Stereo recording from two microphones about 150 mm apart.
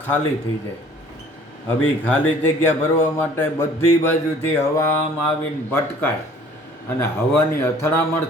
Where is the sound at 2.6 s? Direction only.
15° left (ahead or behind).